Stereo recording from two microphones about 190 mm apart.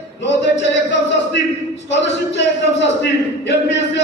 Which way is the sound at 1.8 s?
70° left (ahead or behind).